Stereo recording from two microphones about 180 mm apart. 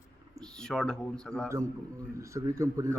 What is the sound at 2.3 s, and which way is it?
Speech, 15° right (ahead or behind).